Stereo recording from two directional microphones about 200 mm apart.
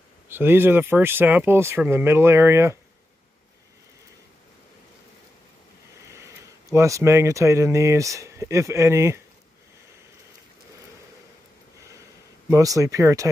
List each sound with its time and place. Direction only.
0.3 s speech: 10° right (ahead or behind)
6.7 s speech: 15° right (ahead or behind)
12.4 s speech: 15° right (ahead or behind)